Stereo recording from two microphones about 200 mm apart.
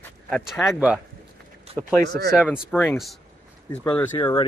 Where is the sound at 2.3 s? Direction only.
5° left (ahead or behind).